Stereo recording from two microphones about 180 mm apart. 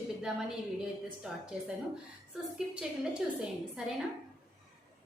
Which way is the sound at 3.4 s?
5° right (ahead or behind).